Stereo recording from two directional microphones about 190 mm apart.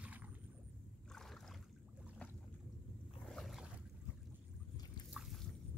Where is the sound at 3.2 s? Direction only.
Centre (ahead or behind).